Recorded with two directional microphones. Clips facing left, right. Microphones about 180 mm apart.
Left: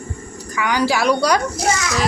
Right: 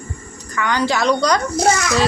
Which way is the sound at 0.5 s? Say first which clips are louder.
Even; 10° left (ahead or behind).